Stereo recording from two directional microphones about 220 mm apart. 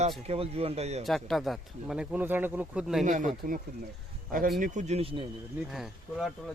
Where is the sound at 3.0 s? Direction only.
35° right (ahead or behind).